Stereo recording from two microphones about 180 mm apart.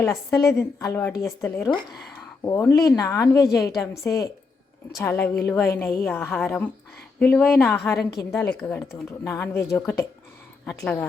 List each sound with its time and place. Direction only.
0.0 s speech: 15° left (ahead or behind)
7.9 s a woman's voice: 65° left (ahead or behind)
8.6 s speech: 10° left (ahead or behind)